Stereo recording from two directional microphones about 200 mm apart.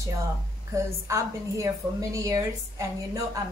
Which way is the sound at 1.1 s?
15° right (ahead or behind).